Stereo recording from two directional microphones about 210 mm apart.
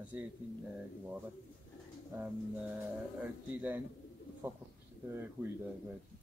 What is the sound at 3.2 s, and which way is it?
Speech, 10° right (ahead or behind).